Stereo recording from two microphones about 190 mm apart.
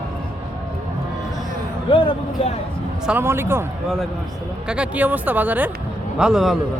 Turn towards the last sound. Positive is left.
turn(degrees=0)  # may be behind; listen again after turning